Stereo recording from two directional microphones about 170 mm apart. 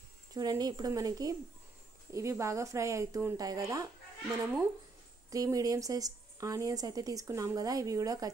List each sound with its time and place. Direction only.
0.3 s speech: 20° right (ahead or behind)
5.3 s speech: 20° right (ahead or behind)